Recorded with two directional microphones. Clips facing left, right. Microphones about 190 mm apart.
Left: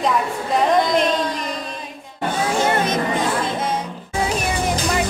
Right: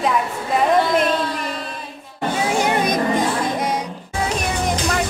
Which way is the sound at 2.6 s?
15° right (ahead or behind).